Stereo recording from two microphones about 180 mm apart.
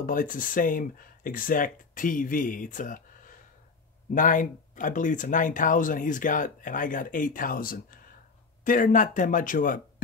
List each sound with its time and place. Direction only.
0.0 s speech: 50° left (ahead or behind)